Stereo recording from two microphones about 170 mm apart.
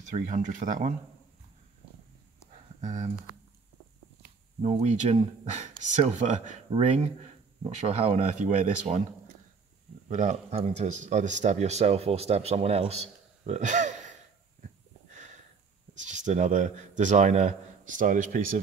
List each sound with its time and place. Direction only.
0.1 s speech: 45° right (ahead or behind)
2.8 s speech: 45° right (ahead or behind)
4.6 s speech: 35° right (ahead or behind)
8.9 s speech: 50° right (ahead or behind)
10.0 s speech: 45° right (ahead or behind)
15.0 s a sound: 45° right (ahead or behind)
15.9 s a man's voice: 45° right (ahead or behind)